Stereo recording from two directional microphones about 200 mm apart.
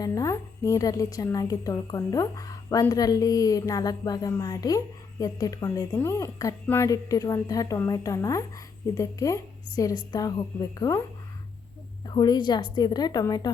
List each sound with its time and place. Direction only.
0.0 s a woman's voice: 15° left (ahead or behind)
12.0 s a woman's voice: 20° left (ahead or behind)